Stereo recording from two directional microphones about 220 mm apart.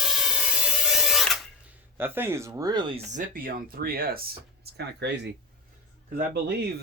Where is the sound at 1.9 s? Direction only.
10° right (ahead or behind); by 5.1 s 50° right (ahead or behind).